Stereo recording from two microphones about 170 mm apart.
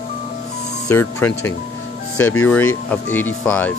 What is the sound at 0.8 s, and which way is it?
Speech, 15° left (ahead or behind).